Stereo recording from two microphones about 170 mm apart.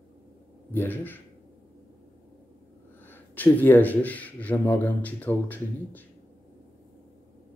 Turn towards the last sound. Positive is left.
turn(degrees=10)  # may be behind; listen again after turning